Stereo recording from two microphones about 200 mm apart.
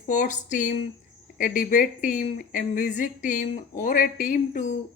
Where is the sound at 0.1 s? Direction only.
40° left (ahead or behind).